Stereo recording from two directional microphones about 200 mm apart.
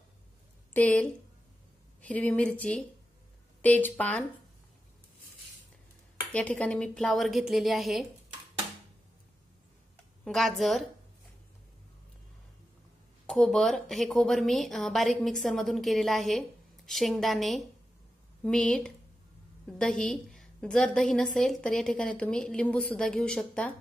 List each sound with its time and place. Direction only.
0.7 s a woman's voice: 5° left (ahead or behind)
6.3 s a woman's voice: 5° left (ahead or behind)
10.2 s a woman's voice: centre (ahead or behind)
13.3 s a woman's voice: centre (ahead or behind)